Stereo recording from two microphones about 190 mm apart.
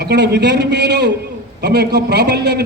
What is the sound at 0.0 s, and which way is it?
A man's voice, 60° right (ahead or behind).